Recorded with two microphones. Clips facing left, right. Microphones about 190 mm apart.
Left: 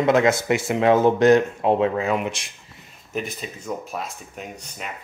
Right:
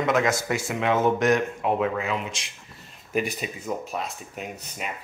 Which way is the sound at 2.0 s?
55° left (ahead or behind).